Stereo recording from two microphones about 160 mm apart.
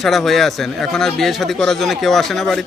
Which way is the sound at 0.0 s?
Centre (ahead or behind).